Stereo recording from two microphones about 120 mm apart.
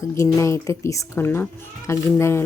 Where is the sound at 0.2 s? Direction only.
25° left (ahead or behind).